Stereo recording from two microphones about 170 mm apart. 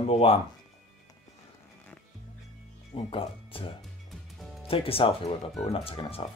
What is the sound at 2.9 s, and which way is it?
Speech, 30° left (ahead or behind).